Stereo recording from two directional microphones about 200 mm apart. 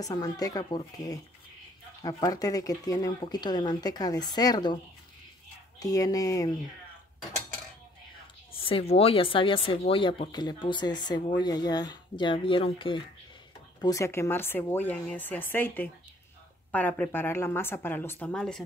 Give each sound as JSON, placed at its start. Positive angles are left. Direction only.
{"t": 0.0, "sound": "speech", "side_deg": 20}
{"t": 5.8, "sound": "speech", "side_deg": 15}
{"t": 8.5, "sound": "speech", "side_deg": 25}